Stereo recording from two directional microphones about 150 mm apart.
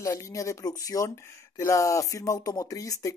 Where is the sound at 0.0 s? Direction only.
20° left (ahead or behind).